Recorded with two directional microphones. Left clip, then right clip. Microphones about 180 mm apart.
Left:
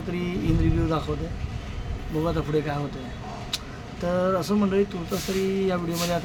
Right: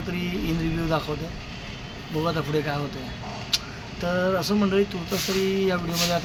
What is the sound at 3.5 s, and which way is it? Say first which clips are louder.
Vehicle: right 7 dB; 15° left (ahead or behind).